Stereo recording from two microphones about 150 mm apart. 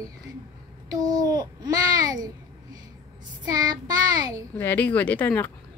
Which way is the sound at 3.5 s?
25° right (ahead or behind).